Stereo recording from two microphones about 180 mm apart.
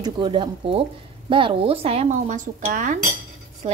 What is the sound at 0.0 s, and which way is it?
A woman's voice, 25° right (ahead or behind).